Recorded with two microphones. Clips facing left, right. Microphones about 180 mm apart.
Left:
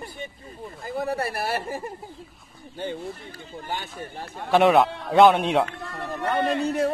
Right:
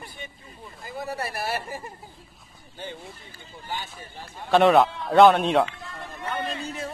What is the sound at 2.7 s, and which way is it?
Speech, 55° left (ahead or behind).